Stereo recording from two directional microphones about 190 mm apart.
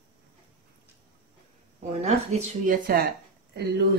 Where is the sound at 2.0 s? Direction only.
40° right (ahead or behind).